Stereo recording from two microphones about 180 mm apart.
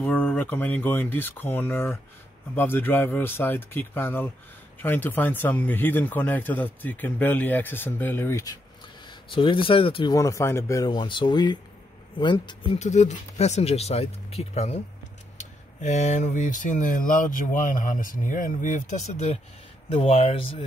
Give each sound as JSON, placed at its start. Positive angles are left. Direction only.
{"t": 0.0, "sound": "a man's voice", "side_deg": 10}
{"t": 9.0, "sound": "speech", "side_deg": 25}
{"t": 10.1, "sound": "speech", "side_deg": 15}
{"t": 12.7, "sound": "speech", "side_deg": 40}